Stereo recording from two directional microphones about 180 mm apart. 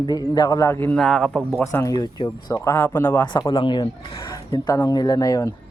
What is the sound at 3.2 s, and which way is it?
Speech, 25° left (ahead or behind).